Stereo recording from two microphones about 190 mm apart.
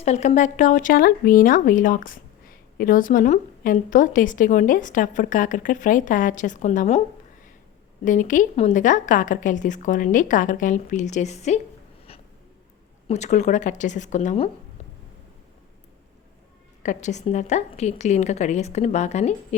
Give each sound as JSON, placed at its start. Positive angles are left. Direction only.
{"t": 0.0, "sound": "speech", "side_deg": 35}
{"t": 8.0, "sound": "a woman's voice", "side_deg": 40}
{"t": 13.1, "sound": "a woman's voice", "side_deg": 35}
{"t": 16.8, "sound": "a woman's voice", "side_deg": 40}